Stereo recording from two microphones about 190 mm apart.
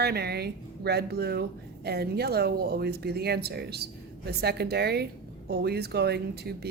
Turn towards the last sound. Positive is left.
turn(degrees=-55)  # may be behind; listen again after turning